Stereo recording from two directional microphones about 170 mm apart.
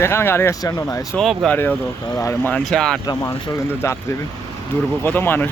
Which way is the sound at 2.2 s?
15° left (ahead or behind).